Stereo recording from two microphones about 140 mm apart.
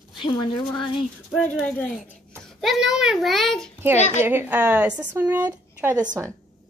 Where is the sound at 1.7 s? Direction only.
10° left (ahead or behind).